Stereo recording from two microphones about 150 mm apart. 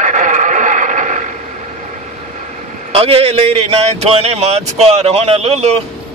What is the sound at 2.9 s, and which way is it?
Speech, 40° right (ahead or behind).